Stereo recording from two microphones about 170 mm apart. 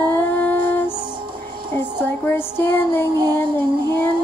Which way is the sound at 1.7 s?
10° left (ahead or behind).